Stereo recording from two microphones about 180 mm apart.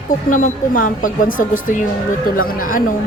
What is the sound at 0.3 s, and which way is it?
A woman's voice, 45° left (ahead or behind).